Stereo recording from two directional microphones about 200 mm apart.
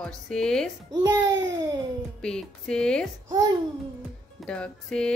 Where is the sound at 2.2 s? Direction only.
5° left (ahead or behind).